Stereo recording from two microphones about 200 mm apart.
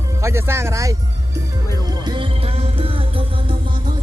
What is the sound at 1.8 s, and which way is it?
Music, 20° right (ahead or behind).